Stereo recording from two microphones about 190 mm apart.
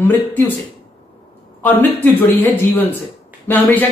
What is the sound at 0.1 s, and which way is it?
Speech, 10° left (ahead or behind).